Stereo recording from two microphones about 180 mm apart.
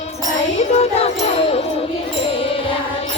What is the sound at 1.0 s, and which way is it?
Music, 35° left (ahead or behind).